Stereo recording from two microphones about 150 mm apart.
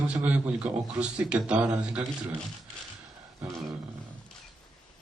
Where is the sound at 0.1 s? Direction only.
10° right (ahead or behind).